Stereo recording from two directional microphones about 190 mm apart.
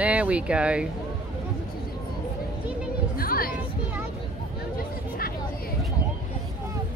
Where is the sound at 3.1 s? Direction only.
50° left (ahead or behind).